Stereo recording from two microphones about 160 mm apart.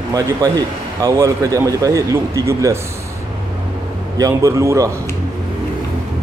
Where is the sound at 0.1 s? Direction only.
25° right (ahead or behind).